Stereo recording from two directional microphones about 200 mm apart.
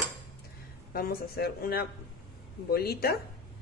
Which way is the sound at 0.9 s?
50° left (ahead or behind).